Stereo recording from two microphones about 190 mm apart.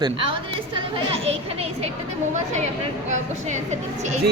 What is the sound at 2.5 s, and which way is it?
Speech, 35° right (ahead or behind).